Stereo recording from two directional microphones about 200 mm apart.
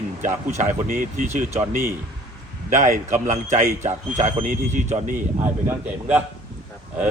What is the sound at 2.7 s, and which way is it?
A man's voice, 35° right (ahead or behind).